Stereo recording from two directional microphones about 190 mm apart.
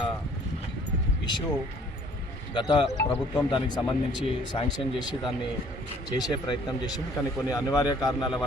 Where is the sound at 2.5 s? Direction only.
20° left (ahead or behind).